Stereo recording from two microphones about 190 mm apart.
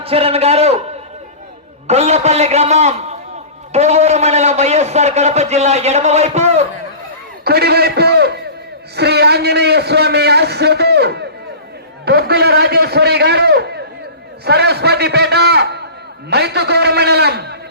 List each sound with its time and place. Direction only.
0.0 s a man's voice: 30° right (ahead or behind)
1.9 s a man's voice: 35° right (ahead or behind)
7.4 s a man's voice: 55° right (ahead or behind)
9.0 s a sound: 60° right (ahead or behind)
12.0 s a man's voice: 60° right (ahead or behind)